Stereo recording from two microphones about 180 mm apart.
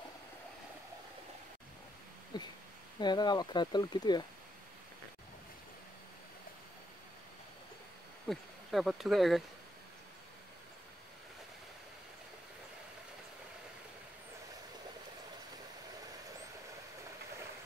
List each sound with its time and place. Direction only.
2.3 s speech: 25° left (ahead or behind)
8.3 s speech: centre (ahead or behind)